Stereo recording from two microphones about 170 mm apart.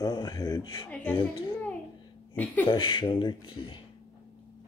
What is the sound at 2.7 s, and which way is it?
Speech, 30° left (ahead or behind).